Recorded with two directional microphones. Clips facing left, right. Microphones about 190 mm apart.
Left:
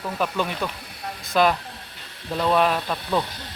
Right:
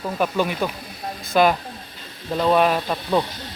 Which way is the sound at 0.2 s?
5° right (ahead or behind).